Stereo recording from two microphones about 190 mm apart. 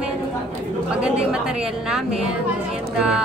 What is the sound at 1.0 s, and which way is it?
A woman's voice, 5° right (ahead or behind).